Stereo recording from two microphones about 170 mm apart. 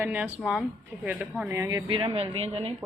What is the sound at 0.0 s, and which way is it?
Speech, 10° right (ahead or behind).